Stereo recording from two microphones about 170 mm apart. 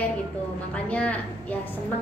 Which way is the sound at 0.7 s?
5° left (ahead or behind).